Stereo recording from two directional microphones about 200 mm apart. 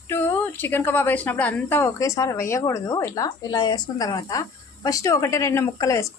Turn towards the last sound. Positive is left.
turn(degrees=15)  # may be behind; listen again after turning